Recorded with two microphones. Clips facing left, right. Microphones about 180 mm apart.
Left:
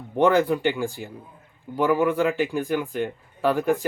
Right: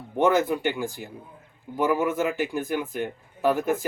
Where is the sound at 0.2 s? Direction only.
5° right (ahead or behind).